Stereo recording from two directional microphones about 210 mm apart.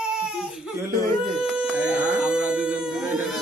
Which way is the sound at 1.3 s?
5° right (ahead or behind).